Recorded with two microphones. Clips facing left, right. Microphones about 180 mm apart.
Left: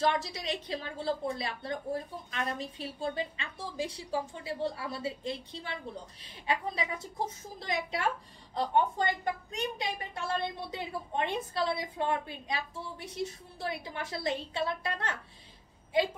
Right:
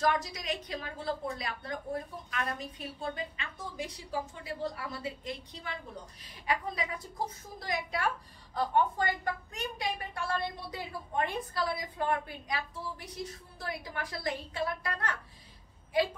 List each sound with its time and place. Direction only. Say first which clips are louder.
0.0 s a woman's voice: left 1 dB; 30° left (ahead or behind)